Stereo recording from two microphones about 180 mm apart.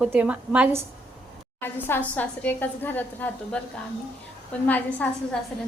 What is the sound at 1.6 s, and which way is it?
A woman's voice, 10° left (ahead or behind).